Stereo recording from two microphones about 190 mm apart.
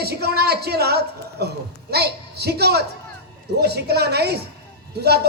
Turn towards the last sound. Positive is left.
turn(degrees=-60)  # may be behind; listen again after turning